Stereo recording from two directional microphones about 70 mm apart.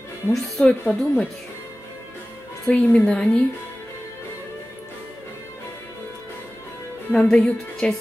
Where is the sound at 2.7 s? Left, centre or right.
Centre.